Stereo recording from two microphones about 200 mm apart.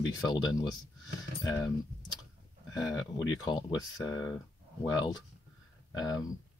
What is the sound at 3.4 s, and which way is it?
Speech, 20° left (ahead or behind).